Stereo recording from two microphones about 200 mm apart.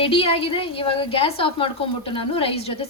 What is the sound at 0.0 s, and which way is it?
A woman's voice, 30° left (ahead or behind).